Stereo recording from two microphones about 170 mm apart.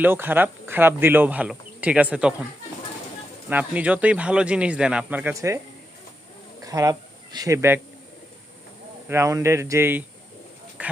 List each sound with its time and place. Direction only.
0.0 s speech: 10° right (ahead or behind)
3.5 s speech: 10° right (ahead or behind)
6.6 s a sound: 20° right (ahead or behind)
7.3 s speech: 20° right (ahead or behind)
9.0 s speech: 15° right (ahead or behind)
10.8 s a sound: 10° right (ahead or behind)